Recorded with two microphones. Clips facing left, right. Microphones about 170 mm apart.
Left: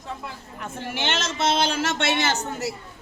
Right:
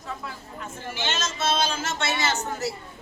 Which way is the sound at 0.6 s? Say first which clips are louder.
Left 3 dB; 60° left (ahead or behind).